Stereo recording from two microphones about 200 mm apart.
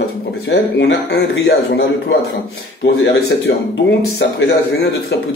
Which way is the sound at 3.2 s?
55° left (ahead or behind).